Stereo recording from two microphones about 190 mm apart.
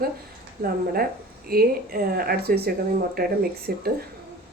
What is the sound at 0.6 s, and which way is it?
Speech, 50° right (ahead or behind).